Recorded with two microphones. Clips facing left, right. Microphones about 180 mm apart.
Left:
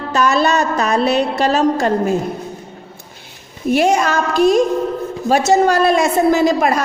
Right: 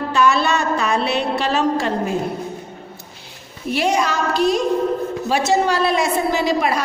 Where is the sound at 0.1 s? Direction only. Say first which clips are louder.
Left 3 dB; 40° left (ahead or behind).